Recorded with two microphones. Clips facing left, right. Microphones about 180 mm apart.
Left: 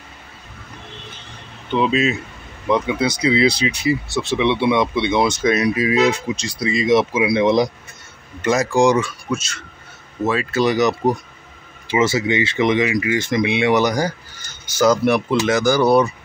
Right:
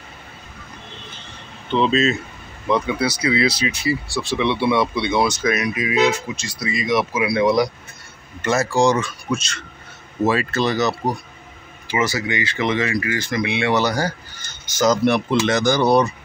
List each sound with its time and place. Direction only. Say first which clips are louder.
1.7 s speech: even; 10° left (ahead or behind)
5.4 s speech: left 4 dB; 30° left (ahead or behind); by 10.5 s centre (ahead or behind)
10.5 s speech: left 3 dB; 15° left (ahead or behind)